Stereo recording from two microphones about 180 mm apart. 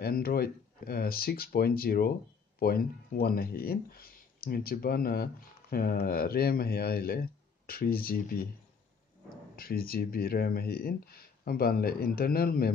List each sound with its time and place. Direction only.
0.0 s speech: 55° left (ahead or behind)
9.6 s speech: 55° left (ahead or behind)